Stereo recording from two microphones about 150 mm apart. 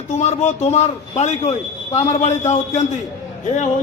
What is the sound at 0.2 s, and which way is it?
A man's voice, 50° left (ahead or behind).